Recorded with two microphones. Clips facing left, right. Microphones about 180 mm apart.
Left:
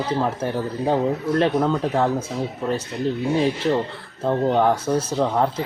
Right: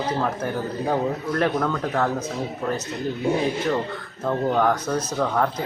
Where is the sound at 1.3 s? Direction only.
25° left (ahead or behind).